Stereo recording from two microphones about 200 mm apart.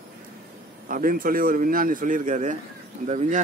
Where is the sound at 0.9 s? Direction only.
45° right (ahead or behind).